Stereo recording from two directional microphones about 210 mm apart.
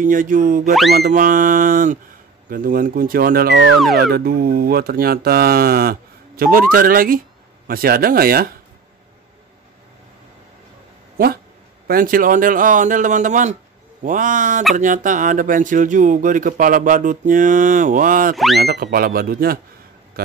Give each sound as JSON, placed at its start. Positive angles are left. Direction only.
{"t": 0.0, "sound": "speech", "side_deg": -40}
{"t": 11.9, "sound": "speech", "side_deg": -40}
{"t": 18.3, "sound": "speech", "side_deg": 0}
{"t": 18.6, "sound": "speech", "side_deg": -45}